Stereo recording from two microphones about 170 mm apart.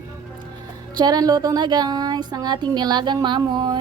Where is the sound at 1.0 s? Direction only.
25° right (ahead or behind).